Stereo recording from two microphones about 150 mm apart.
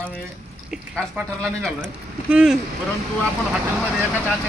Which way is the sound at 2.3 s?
5° right (ahead or behind).